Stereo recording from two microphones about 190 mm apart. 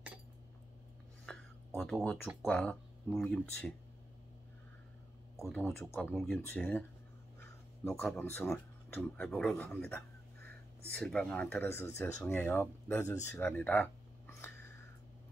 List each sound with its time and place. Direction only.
1.3 s whispering: 5° left (ahead or behind)
1.8 s speech: 10° left (ahead or behind)
5.4 s speech: 10° left (ahead or behind)
7.8 s speech: 10° left (ahead or behind)